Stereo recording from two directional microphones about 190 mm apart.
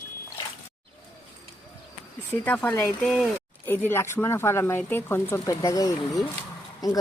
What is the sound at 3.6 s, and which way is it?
A woman's voice, 10° left (ahead or behind).